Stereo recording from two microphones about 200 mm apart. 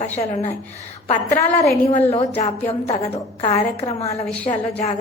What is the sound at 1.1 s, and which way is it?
A woman's voice, 35° left (ahead or behind).